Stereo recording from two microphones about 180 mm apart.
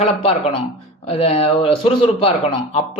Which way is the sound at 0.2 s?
30° left (ahead or behind).